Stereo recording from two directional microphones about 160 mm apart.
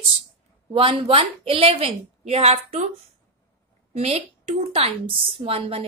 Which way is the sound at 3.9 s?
40° right (ahead or behind).